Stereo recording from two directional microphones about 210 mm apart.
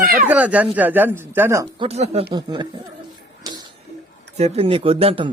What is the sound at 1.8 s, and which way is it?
Speech, 30° right (ahead or behind).